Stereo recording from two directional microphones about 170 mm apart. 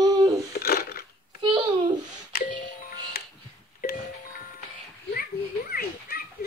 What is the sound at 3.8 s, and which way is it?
Music, 55° left (ahead or behind).